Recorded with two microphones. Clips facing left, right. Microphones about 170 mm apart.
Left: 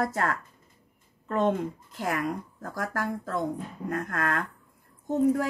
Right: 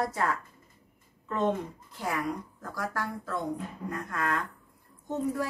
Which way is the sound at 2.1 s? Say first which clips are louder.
Left 2 dB; 50° left (ahead or behind).